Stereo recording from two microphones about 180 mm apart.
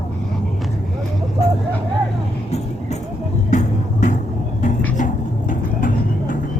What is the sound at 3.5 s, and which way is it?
Music, 45° left (ahead or behind).